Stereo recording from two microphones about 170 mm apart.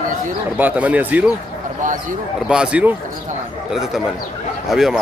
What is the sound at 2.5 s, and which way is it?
Speech, 5° right (ahead or behind).